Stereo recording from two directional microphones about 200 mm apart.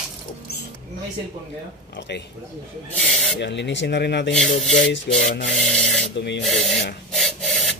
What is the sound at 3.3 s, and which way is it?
Speech, 60° left (ahead or behind).